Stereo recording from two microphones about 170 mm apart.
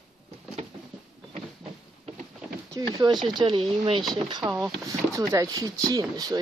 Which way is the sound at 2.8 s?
20° right (ahead or behind).